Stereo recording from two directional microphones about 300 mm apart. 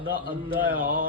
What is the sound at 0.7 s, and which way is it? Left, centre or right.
Speech, right.